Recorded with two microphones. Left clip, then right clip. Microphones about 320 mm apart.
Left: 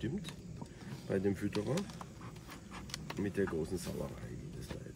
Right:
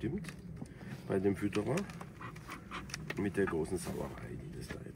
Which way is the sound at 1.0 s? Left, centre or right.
Centre.